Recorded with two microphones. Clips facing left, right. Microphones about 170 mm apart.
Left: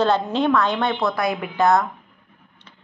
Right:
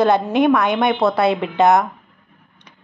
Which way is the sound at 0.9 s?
30° right (ahead or behind).